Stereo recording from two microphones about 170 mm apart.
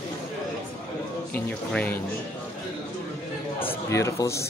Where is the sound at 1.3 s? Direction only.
10° left (ahead or behind).